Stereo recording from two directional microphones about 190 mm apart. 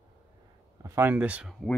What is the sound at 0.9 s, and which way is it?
Speech, 10° right (ahead or behind).